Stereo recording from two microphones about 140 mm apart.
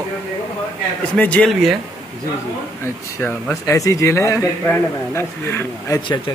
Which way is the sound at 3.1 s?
10° left (ahead or behind).